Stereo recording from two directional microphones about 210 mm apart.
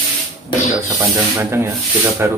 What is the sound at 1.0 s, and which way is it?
Snake, 10° right (ahead or behind).